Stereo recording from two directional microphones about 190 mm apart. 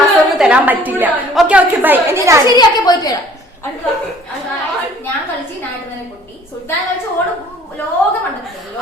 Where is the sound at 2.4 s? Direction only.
20° left (ahead or behind).